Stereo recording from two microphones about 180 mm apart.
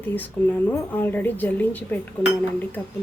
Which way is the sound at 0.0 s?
10° left (ahead or behind).